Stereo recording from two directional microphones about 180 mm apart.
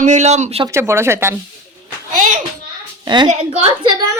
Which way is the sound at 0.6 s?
15° right (ahead or behind).